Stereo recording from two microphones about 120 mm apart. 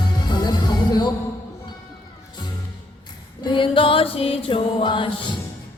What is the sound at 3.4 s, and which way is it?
Music, 45° left (ahead or behind).